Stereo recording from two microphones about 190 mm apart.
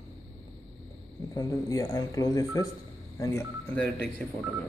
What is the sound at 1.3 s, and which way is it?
Speech, 20° left (ahead or behind).